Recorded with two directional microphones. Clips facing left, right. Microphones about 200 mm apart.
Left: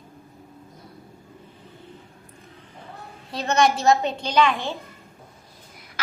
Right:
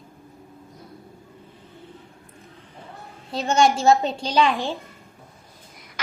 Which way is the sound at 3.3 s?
25° right (ahead or behind).